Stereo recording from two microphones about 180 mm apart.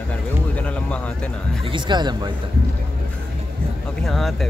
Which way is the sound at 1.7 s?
25° right (ahead or behind).